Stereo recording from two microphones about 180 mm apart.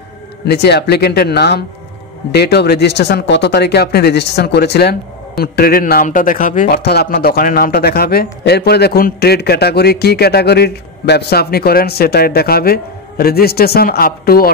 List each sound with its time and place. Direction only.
0.5 s a man's voice: 65° left (ahead or behind)